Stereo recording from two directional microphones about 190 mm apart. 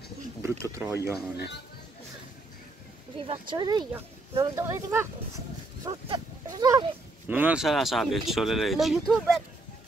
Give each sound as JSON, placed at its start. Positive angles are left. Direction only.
{"t": 0.4, "sound": "speech", "side_deg": -15}
{"t": 3.2, "sound": "speech", "side_deg": -25}
{"t": 7.2, "sound": "speech", "side_deg": -10}